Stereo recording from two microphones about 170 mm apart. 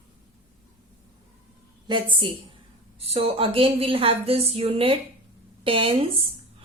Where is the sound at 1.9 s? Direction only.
30° right (ahead or behind).